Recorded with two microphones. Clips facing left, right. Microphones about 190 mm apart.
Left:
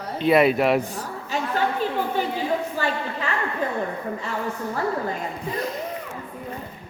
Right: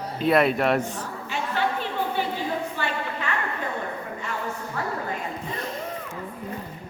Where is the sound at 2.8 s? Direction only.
40° left (ahead or behind).